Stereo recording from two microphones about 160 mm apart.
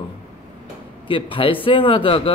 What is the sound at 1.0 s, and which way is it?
Speech, 35° left (ahead or behind).